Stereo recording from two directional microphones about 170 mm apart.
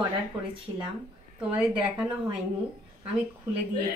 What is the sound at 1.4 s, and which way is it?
A woman's voice, 5° right (ahead or behind).